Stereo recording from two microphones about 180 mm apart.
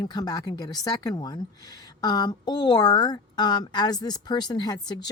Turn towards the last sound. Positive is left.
turn(degrees=25)  # may be behind; listen again after turning